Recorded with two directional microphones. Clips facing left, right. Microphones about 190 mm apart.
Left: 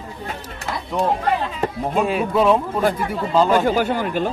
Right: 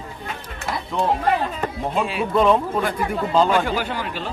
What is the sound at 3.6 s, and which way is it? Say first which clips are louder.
Speech: left 6 dB; 45° left (ahead or behind).